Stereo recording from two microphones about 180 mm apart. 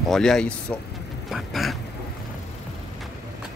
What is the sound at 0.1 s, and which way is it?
Speech, 5° left (ahead or behind).